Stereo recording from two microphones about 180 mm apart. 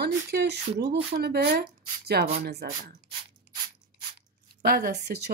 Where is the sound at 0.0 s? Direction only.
70° right (ahead or behind).